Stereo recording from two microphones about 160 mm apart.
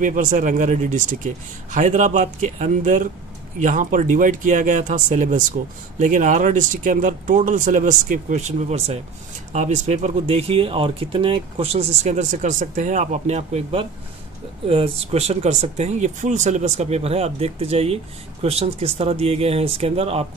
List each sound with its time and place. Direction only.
0.0 s speech: 55° right (ahead or behind)